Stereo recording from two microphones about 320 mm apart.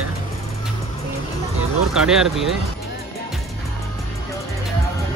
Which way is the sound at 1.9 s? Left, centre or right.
Centre.